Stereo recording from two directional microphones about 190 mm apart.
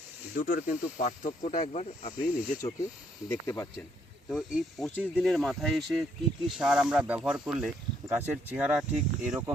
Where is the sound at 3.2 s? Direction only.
15° left (ahead or behind).